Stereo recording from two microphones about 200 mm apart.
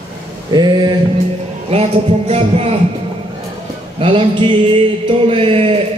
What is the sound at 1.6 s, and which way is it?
Music, 30° right (ahead or behind).